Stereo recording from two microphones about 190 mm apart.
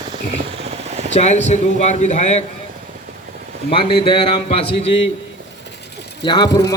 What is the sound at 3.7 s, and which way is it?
A man's voice, 25° left (ahead or behind).